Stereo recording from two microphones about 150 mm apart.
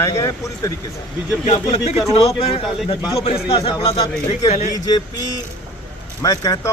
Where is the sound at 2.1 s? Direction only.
40° left (ahead or behind).